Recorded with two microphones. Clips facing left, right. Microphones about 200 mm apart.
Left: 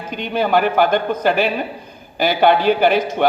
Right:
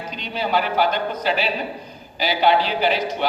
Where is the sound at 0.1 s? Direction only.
50° left (ahead or behind).